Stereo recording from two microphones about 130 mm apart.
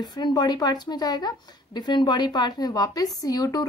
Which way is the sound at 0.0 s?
35° left (ahead or behind).